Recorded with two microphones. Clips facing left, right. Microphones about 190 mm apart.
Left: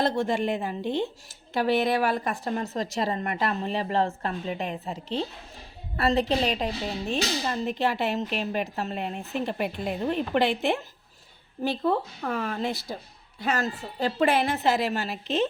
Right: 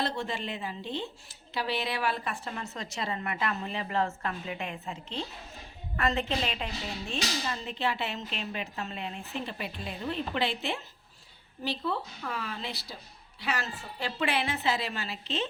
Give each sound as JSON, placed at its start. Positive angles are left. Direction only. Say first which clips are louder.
{"t": 0.0, "sound": "a woman's voice", "louder": "left 8 dB", "side_deg": 45}